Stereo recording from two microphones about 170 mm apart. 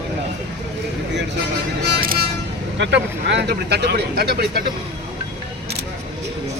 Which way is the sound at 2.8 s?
90° right.